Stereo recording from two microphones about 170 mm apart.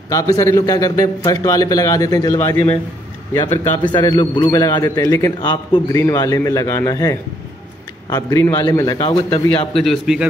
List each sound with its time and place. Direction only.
0.1 s a man's voice: 20° left (ahead or behind)
9.8 s speech: centre (ahead or behind)